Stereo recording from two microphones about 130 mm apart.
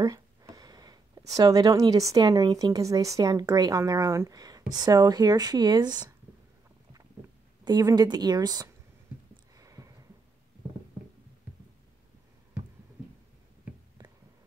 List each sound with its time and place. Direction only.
0.0 s speech: 25° right (ahead or behind)
7.6 s speech: 35° right (ahead or behind)
9.6 s a sound: 25° right (ahead or behind)